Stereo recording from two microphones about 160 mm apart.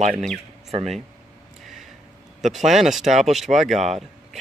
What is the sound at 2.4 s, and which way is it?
Speech, centre (ahead or behind).